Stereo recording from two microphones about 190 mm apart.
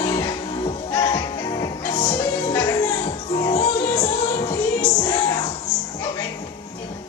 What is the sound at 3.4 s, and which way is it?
Music, 30° left (ahead or behind).